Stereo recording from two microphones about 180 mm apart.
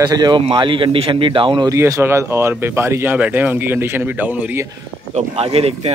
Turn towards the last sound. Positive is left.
turn(degrees=-35)  # may be behind; listen again after turning